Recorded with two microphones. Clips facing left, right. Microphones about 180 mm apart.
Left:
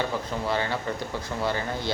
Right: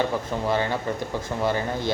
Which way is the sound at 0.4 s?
15° right (ahead or behind).